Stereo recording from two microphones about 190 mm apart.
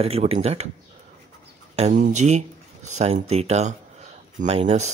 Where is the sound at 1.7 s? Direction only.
35° right (ahead or behind).